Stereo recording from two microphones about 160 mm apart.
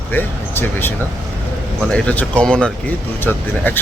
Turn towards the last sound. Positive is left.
turn(degrees=10)  # may be behind; listen again after turning